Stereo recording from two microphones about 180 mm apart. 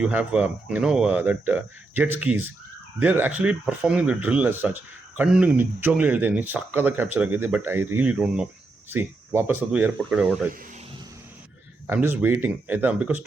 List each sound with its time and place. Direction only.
0.0 s speech: 5° right (ahead or behind)
11.9 s speech: 10° right (ahead or behind)